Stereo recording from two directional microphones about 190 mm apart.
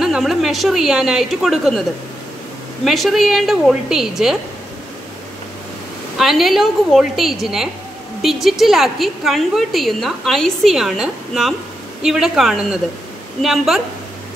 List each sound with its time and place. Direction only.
0.0 s a woman's voice: centre (ahead or behind)
2.8 s a woman's voice: centre (ahead or behind)
6.1 s a woman's voice: centre (ahead or behind)